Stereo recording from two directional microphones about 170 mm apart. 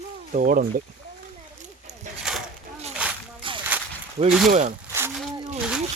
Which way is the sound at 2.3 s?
5° right (ahead or behind).